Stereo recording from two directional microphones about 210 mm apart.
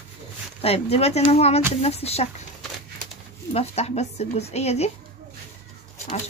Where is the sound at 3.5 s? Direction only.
30° left (ahead or behind).